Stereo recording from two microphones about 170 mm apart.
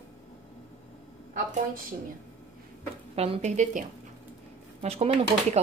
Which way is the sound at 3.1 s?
35° right (ahead or behind).